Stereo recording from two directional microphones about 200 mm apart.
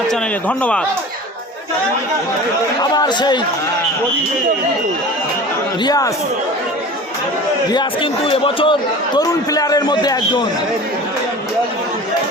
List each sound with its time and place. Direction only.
0.1 s a man's voice: 5° left (ahead or behind)
2.8 s a man's voice: 20° left (ahead or behind)
5.8 s a man's voice: 20° left (ahead or behind)
7.7 s a man's voice: 25° left (ahead or behind)